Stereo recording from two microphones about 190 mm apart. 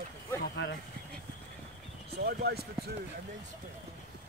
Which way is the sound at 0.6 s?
65° left (ahead or behind).